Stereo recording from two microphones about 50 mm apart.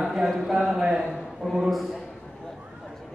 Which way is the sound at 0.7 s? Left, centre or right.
Centre.